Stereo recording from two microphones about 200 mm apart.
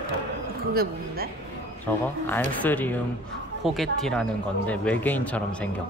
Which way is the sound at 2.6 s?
10° left (ahead or behind).